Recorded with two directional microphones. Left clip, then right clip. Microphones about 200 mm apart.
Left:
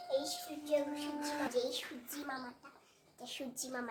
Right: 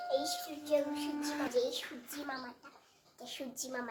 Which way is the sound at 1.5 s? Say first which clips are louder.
Right 3 dB; centre (ahead or behind).